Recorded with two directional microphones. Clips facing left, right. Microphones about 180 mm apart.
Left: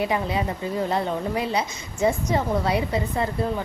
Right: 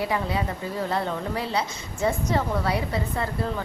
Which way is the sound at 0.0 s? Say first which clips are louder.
Left 2 dB; 20° left (ahead or behind).